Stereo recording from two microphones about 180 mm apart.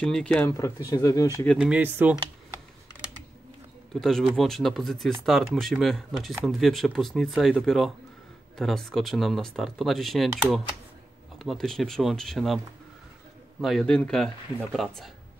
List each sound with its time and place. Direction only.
0.0 s speech: 5° left (ahead or behind)
0.5 s speech: 20° left (ahead or behind)
1.6 s speech: 10° right (ahead or behind)
3.9 s speech: centre (ahead or behind)
13.6 s speech: centre (ahead or behind)